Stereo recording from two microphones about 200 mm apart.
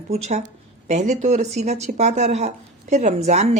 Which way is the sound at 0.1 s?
35° right (ahead or behind).